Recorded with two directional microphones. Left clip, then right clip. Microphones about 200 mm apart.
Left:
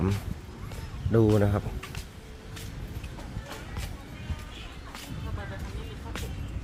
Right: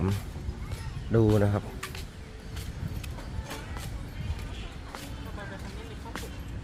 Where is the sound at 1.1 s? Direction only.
10° left (ahead or behind).